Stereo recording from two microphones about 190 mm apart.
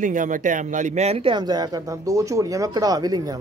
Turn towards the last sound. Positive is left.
turn(degrees=-20)  # may be behind; listen again after turning